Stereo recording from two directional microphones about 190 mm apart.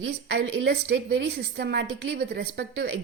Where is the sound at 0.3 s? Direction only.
80° right.